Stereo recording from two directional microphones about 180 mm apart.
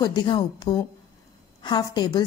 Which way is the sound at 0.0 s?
20° left (ahead or behind).